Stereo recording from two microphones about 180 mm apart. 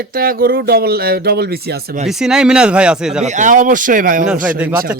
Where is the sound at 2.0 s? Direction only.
5° right (ahead or behind).